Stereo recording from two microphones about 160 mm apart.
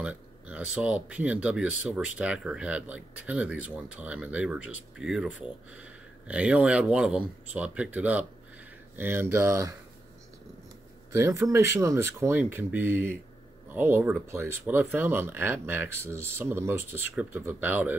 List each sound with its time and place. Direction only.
0.0 s speech: 10° right (ahead or behind)
11.1 s speech: 15° right (ahead or behind)